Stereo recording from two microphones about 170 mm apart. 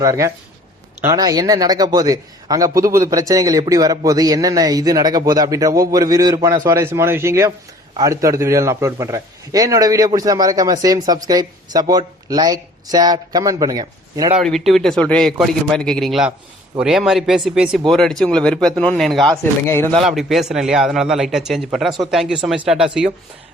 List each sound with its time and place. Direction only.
0.0 s a man's voice: 20° right (ahead or behind)
14.3 s a man's voice: centre (ahead or behind)
19.4 s speech: 15° left (ahead or behind)
20.1 s a man's voice: centre (ahead or behind)